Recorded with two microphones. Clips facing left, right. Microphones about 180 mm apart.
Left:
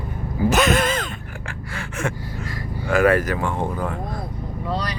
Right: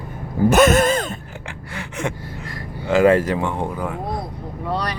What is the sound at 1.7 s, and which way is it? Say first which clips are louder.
Gasp: right 1 dB; 15° right (ahead or behind).